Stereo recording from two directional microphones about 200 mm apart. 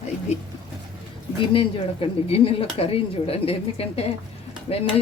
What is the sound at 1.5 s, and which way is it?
Speech, 30° left (ahead or behind).